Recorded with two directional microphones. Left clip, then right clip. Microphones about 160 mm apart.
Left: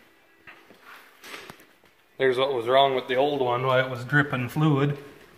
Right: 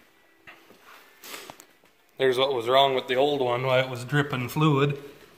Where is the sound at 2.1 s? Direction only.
5° right (ahead or behind).